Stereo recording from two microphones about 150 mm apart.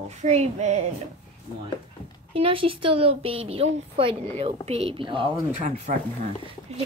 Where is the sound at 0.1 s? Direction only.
50° right (ahead or behind).